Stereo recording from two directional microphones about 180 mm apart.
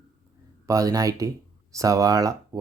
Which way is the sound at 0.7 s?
20° right (ahead or behind).